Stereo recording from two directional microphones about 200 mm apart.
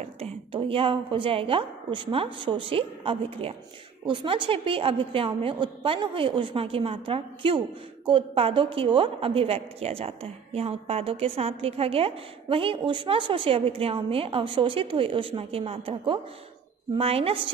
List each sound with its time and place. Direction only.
0.0 s a woman's voice: 30° right (ahead or behind)